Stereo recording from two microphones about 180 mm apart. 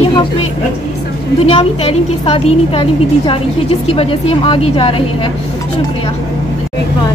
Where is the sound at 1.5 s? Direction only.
30° left (ahead or behind).